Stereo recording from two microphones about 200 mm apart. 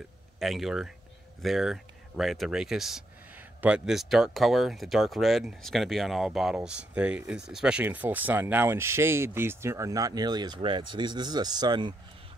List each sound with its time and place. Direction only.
0.4 s speech: centre (ahead or behind); by 11.9 s 20° right (ahead or behind)